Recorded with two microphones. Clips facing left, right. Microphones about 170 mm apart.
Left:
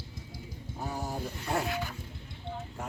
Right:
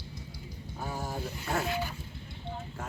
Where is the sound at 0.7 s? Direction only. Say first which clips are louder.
Left 1 dB; 15° left (ahead or behind).